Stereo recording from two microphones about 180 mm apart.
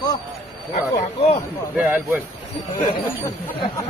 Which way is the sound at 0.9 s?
35° left (ahead or behind).